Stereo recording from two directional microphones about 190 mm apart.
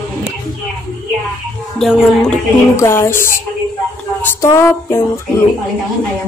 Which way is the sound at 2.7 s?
15° left (ahead or behind).